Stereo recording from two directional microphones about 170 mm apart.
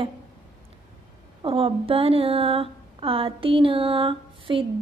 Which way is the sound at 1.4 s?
35° right (ahead or behind).